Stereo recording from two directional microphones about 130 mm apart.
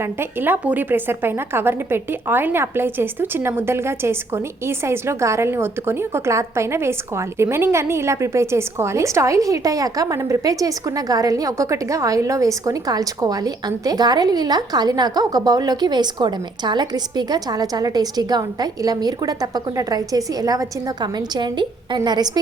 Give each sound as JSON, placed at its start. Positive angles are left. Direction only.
{"t": 0.0, "sound": "a woman's voice", "side_deg": -15}